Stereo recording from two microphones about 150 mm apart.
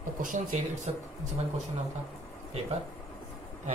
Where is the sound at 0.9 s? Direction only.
45° right (ahead or behind).